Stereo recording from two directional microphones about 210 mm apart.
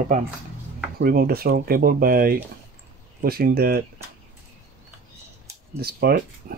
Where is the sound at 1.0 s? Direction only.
45° right (ahead or behind).